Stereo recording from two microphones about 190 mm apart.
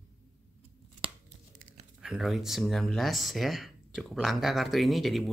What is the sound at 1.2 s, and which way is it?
Tearing, 40° right (ahead or behind).